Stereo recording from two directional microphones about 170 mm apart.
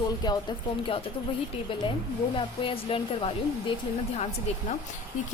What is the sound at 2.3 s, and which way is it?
Speech, 30° left (ahead or behind).